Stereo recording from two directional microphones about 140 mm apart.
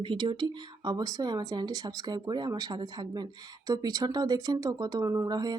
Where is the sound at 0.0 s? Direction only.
35° right (ahead or behind).